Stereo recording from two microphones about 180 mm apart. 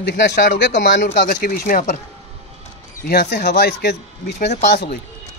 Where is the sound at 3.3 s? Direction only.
65° left (ahead or behind).